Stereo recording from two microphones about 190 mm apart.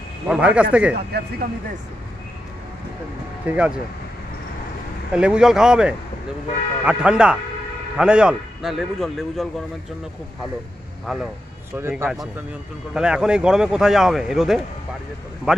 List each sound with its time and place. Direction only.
0.3 s speech: 5° right (ahead or behind)
0.9 s speech: 55° right (ahead or behind)
3.4 s speech: 5° right (ahead or behind)
5.1 s speech: 5° right (ahead or behind)
11.1 s speech: centre (ahead or behind)
11.7 s speech: 10° right (ahead or behind)